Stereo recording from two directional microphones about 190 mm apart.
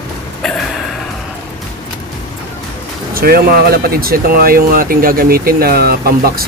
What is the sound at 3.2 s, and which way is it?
Speech, 55° right (ahead or behind).